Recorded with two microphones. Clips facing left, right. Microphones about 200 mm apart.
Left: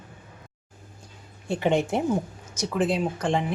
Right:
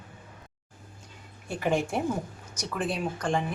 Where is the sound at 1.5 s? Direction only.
25° left (ahead or behind).